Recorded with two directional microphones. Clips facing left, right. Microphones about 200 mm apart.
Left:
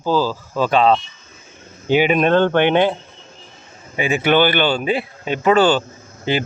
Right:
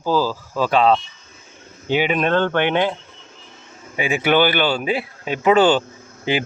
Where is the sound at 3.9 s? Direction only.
10° right (ahead or behind).